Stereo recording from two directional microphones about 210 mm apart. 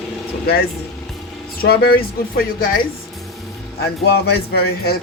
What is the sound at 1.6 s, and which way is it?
Speech, 65° left (ahead or behind).